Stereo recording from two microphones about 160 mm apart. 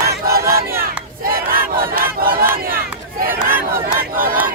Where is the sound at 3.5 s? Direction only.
65° right (ahead or behind).